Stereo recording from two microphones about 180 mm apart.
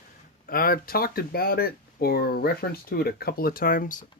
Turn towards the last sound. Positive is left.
turn(degrees=50)  # may be behind; listen again after turning